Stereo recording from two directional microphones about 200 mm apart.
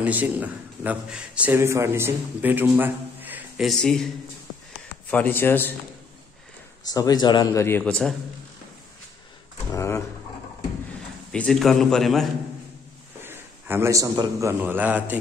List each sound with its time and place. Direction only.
0.0 s a man's voice: 10° right (ahead or behind)
5.1 s a man's voice: 10° left (ahead or behind)
6.9 s a man's voice: 20° left (ahead or behind)
9.8 s a man's voice: 15° left (ahead or behind)
11.3 s a man's voice: centre (ahead or behind)
13.2 s a man's voice: 10° right (ahead or behind)